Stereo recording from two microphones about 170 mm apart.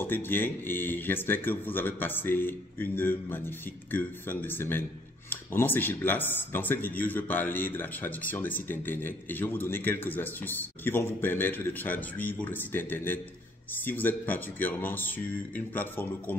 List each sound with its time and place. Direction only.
0.0 s speech: 10° left (ahead or behind)